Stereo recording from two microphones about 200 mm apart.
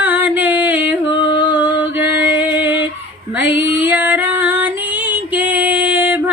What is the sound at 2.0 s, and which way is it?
Music, 10° right (ahead or behind).